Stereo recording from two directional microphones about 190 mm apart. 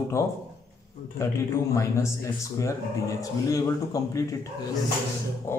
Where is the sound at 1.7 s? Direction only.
15° left (ahead or behind).